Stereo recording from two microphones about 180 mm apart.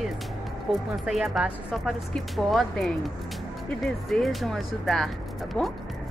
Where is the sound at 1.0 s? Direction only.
Centre (ahead or behind).